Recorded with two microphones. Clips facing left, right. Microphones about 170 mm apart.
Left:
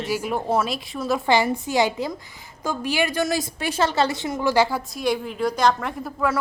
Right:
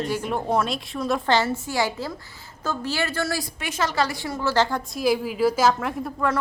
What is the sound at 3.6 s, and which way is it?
A woman's voice, 30° left (ahead or behind).